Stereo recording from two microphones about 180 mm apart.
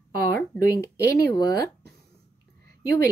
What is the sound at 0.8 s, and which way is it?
Speech, 15° left (ahead or behind).